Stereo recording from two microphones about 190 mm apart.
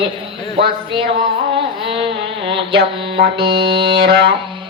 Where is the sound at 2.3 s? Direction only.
30° right (ahead or behind).